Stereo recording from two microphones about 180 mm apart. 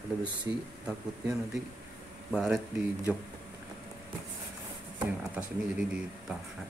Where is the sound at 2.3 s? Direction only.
5° right (ahead or behind).